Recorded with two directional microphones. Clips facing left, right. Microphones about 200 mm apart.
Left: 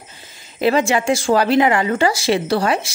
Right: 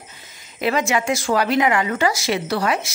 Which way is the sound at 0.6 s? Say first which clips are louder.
Left 4 dB; 30° left (ahead or behind).